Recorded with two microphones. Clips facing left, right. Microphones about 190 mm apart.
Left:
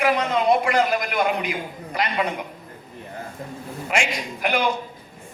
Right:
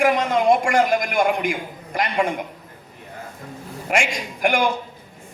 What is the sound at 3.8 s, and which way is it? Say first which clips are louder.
Speech: right 2 dB; 50° right (ahead or behind).